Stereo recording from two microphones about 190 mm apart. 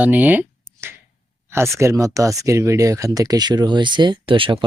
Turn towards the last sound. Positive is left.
turn(degrees=-25)  # may be behind; listen again after turning